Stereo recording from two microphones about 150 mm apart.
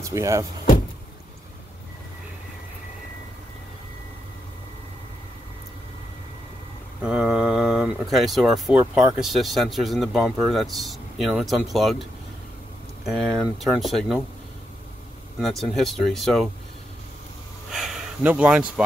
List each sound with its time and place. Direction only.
0.0 s speech: 20° right (ahead or behind)
7.0 s speech: 5° right (ahead or behind)
13.0 s speech: centre (ahead or behind)
15.3 s speech: centre (ahead or behind)
17.6 s a sound: centre (ahead or behind)